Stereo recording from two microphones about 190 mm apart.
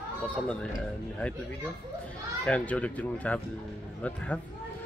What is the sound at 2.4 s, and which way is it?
Speech, 5° left (ahead or behind).